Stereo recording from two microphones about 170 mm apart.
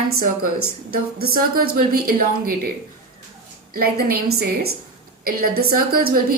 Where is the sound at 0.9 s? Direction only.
60° right (ahead or behind).